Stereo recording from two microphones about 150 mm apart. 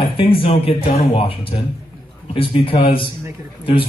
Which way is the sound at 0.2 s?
40° left (ahead or behind).